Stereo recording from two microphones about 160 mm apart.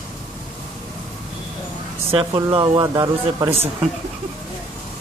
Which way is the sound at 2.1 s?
35° right (ahead or behind).